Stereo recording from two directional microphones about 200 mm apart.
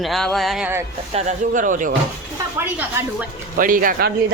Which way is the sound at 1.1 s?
35° right (ahead or behind).